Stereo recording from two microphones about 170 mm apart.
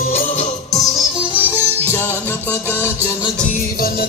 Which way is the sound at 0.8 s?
30° left (ahead or behind).